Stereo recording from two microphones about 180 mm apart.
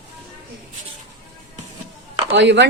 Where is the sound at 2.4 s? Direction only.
75° right (ahead or behind).